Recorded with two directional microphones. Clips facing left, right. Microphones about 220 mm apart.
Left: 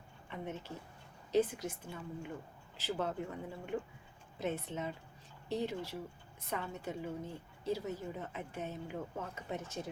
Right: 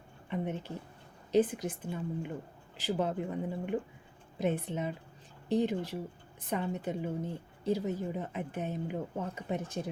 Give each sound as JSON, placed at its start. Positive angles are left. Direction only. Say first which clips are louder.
{"t": 0.3, "sound": "a woman's voice", "louder": "right 7 dB", "side_deg": -15}